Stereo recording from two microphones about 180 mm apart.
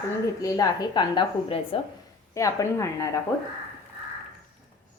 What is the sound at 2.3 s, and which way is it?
A woman's voice, 20° left (ahead or behind).